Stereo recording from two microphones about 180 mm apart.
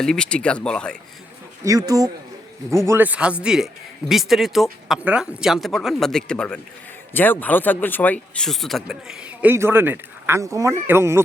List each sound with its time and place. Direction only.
0.0 s speech: 5° left (ahead or behind)
1.6 s speech: 20° right (ahead or behind)